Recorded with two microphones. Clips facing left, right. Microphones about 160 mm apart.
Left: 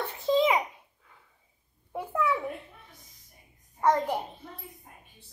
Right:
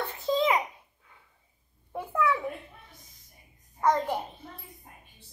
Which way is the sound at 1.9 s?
10° left (ahead or behind).